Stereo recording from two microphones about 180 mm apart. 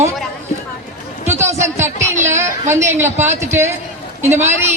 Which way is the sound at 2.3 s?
15° right (ahead or behind).